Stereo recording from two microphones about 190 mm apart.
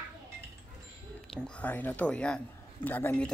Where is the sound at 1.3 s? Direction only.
5° left (ahead or behind).